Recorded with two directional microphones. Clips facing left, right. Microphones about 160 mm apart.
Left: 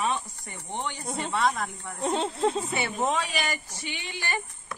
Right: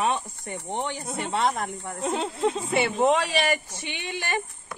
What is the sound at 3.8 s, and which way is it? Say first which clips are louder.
Speech: right 4 dB; 60° right (ahead or behind).